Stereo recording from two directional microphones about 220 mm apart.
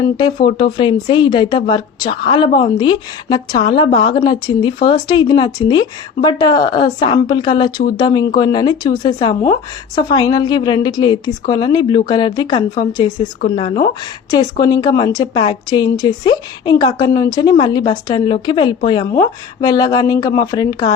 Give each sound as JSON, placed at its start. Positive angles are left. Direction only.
{"t": 0.4, "sound": "a woman's voice", "side_deg": 20}